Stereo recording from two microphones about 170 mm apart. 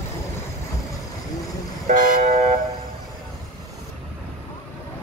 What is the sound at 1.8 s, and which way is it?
Vehicle, 50° right (ahead or behind).